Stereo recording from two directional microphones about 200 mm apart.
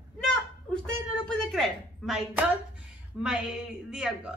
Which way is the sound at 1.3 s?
Centre (ahead or behind).